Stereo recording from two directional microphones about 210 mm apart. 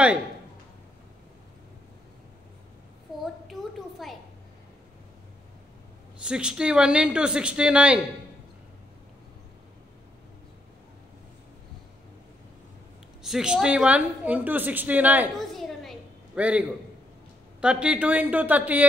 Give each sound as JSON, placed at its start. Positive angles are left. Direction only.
{"t": 3.6, "sound": "a sound", "side_deg": 0}
{"t": 4.0, "sound": "a woman's voice", "side_deg": 0}
{"t": 6.2, "sound": "a woman's voice", "side_deg": -5}
{"t": 13.2, "sound": "a woman's voice", "side_deg": -5}